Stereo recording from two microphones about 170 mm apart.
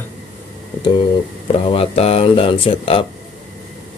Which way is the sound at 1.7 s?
35° left (ahead or behind).